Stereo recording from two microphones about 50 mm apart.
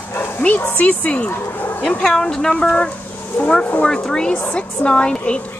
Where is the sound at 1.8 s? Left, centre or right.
Centre.